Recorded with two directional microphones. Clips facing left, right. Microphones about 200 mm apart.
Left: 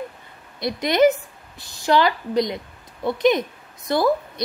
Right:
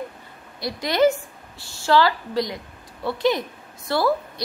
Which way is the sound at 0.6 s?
20° left (ahead or behind).